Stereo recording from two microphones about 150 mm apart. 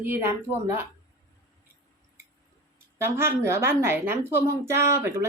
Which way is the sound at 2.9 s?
15° right (ahead or behind).